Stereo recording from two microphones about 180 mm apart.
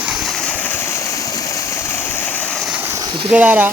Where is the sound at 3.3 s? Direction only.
10° right (ahead or behind).